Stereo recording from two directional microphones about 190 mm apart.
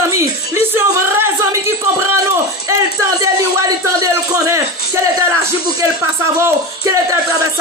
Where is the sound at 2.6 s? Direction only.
15° right (ahead or behind).